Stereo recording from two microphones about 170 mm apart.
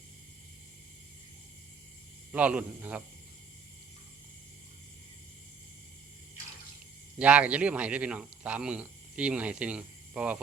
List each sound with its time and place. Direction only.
2.3 s a man's voice: 10° right (ahead or behind)
7.2 s a man's voice: 5° right (ahead or behind)